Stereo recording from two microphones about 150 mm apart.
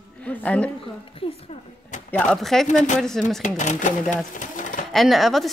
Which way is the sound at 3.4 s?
55° left (ahead or behind).